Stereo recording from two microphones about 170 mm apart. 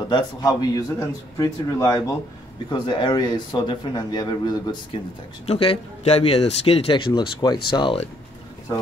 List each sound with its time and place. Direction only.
0.1 s a man's voice: 25° left (ahead or behind)
7.1 s a man's voice: 25° left (ahead or behind)